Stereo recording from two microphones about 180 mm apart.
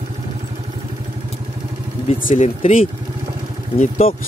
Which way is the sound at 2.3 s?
40° left (ahead or behind).